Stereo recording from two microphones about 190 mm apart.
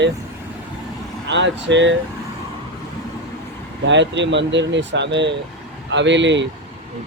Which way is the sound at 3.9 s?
70° right (ahead or behind).